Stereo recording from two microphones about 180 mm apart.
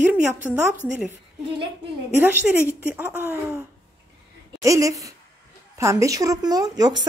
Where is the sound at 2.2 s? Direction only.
10° right (ahead or behind).